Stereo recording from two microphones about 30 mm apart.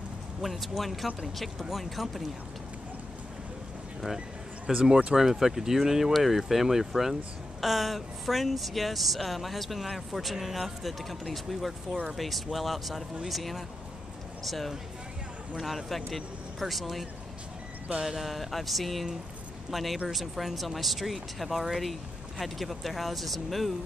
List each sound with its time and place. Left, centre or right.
0.4 s speech: centre
4.7 s speech: right
5.1 s speech: centre
18.1 s speech: centre